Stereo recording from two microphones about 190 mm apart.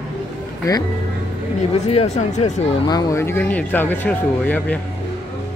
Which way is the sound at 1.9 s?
35° left (ahead or behind).